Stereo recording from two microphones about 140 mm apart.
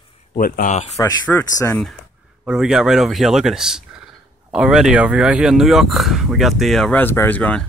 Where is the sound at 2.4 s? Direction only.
5° right (ahead or behind).